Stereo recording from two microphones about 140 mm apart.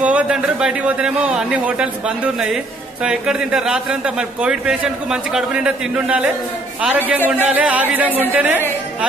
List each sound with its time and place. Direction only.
0.0 s a man's voice: 5° right (ahead or behind)